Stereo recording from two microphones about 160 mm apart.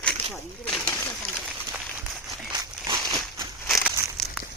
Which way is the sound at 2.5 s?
20° right (ahead or behind).